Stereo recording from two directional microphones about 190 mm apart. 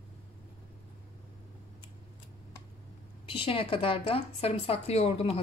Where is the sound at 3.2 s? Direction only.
30° left (ahead or behind).